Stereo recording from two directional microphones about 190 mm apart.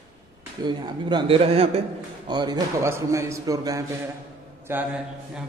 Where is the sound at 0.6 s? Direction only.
25° right (ahead or behind).